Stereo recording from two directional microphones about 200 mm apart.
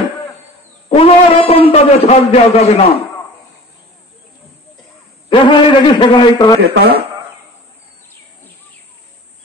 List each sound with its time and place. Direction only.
0.8 s a sound: 30° left (ahead or behind)
5.3 s a man's voice: 25° left (ahead or behind)
6.7 s speech: 50° right (ahead or behind)